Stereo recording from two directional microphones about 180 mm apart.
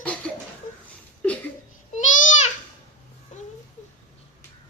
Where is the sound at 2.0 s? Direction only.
45° left (ahead or behind).